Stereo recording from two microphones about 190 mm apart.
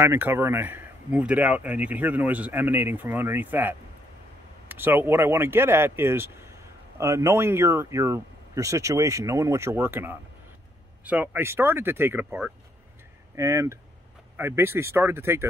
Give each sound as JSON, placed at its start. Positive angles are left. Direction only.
{"t": 0.0, "sound": "speech", "side_deg": -10}